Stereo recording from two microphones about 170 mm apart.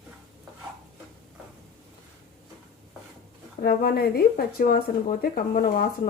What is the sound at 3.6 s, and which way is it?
Speech, 60° left (ahead or behind).